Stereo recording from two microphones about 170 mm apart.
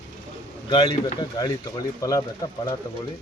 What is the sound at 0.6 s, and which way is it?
A man's voice, 25° left (ahead or behind).